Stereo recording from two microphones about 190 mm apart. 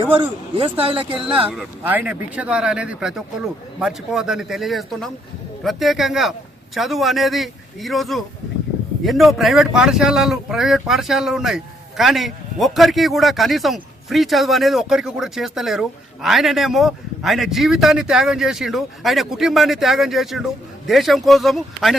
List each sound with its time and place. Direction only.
0.0 s speech: 30° right (ahead or behind)
1.5 s speech: 10° right (ahead or behind)